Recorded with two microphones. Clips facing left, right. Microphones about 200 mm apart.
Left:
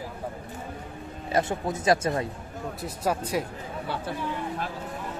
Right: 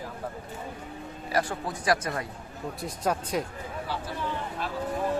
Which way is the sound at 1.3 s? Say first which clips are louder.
Left 3 dB; 25° left (ahead or behind).